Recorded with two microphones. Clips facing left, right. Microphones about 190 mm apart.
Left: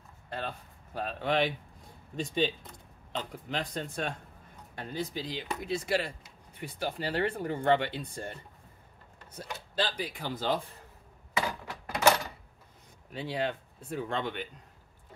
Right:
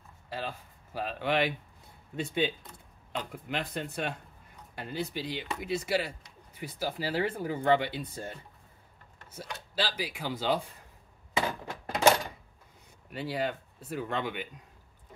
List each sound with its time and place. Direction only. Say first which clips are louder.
0.3 s speech: even; 5° right (ahead or behind)
3.1 s speech: even; 5° right (ahead or behind)
11.3 s a sound: right 2 dB; 25° right (ahead or behind)
13.1 s speech: even; 5° right (ahead or behind)